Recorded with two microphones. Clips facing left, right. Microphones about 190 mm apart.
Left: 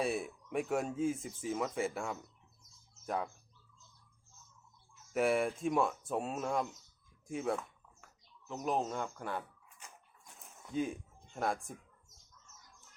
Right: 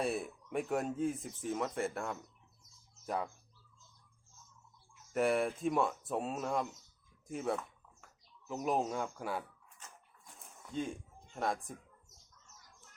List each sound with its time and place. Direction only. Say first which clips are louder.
0.0 s speech: left 1 dB; centre (ahead or behind)
5.1 s speech: even; centre (ahead or behind)
9.8 s a sound: even; 10° left (ahead or behind)
10.4 s bird: left 3 dB; 5° left (ahead or behind)